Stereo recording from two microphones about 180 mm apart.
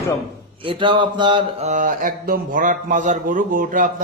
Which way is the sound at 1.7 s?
45° right (ahead or behind).